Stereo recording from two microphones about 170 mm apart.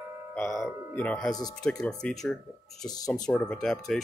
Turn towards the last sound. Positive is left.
turn(degrees=5)  # may be behind; listen again after turning